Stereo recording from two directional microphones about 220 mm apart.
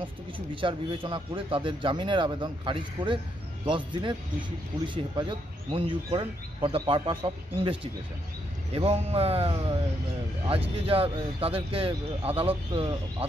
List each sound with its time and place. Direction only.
0.6 s a man's voice: 25° right (ahead or behind)
10.9 s a man's voice: 25° right (ahead or behind)